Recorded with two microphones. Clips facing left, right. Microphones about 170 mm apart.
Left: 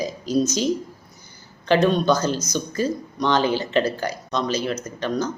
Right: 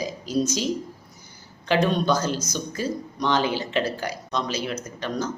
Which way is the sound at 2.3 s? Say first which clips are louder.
Left 2 dB; 40° left (ahead or behind).